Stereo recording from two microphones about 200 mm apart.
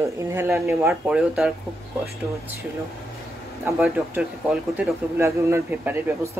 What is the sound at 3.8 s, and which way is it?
Speech, 5° right (ahead or behind).